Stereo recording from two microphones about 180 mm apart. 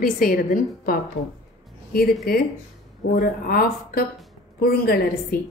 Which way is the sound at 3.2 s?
55° left (ahead or behind).